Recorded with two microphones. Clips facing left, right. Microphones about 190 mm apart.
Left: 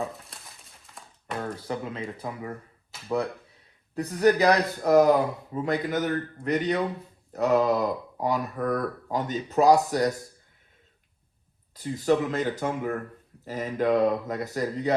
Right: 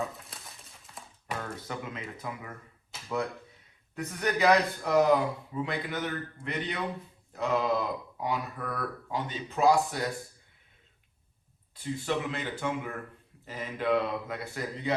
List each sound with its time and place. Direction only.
0.0 s a sound: centre (ahead or behind)
1.5 s speech: 30° left (ahead or behind)
3.9 s speech: 35° left (ahead or behind)
11.7 s speech: 40° left (ahead or behind)